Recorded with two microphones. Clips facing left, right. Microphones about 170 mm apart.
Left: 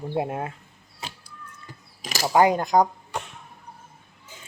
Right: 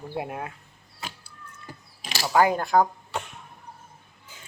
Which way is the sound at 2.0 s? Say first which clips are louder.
Left 4 dB; 45° left (ahead or behind).